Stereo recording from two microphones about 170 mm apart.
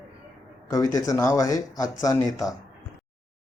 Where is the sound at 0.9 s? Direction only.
15° left (ahead or behind).